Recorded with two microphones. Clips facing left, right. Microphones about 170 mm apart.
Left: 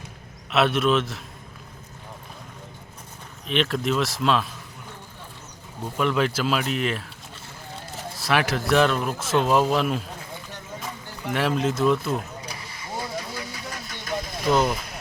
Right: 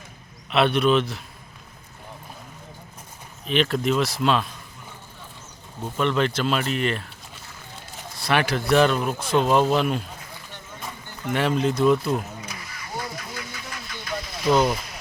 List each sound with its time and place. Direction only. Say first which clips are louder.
0.5 s speech: right 1 dB; centre (ahead or behind)
3.4 s speech: right 2 dB; centre (ahead or behind)
6.0 s speech: even; 5° left (ahead or behind)
8.2 s speech: right 1 dB; centre (ahead or behind)
11.3 s speech: right 1 dB; centre (ahead or behind)
13.0 s vehicle: left 2 dB; 30° left (ahead or behind); by 14.4 s 50° left (ahead or behind)
14.4 s speech: right 2 dB; centre (ahead or behind)